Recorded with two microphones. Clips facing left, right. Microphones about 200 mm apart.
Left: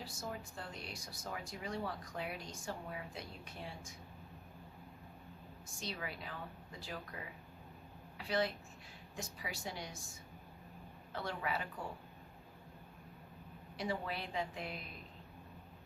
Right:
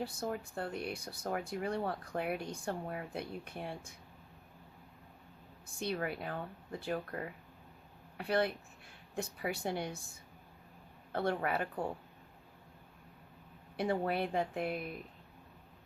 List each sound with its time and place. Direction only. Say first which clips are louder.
0.0 s speech: right 7 dB; 60° right (ahead or behind)
5.6 s speech: right 8 dB; 60° right (ahead or behind)
11.1 s speech: right 7 dB; 55° right (ahead or behind)
13.7 s speech: right 7 dB; 55° right (ahead or behind)